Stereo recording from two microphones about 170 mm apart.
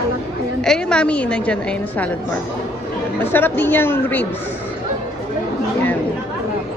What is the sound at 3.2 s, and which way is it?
A woman's voice, 10° left (ahead or behind).